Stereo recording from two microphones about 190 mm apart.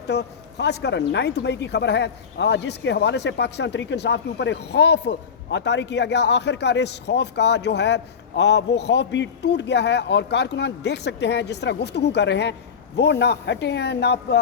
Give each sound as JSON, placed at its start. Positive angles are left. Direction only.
{"t": 0.1, "sound": "speech", "side_deg": 65}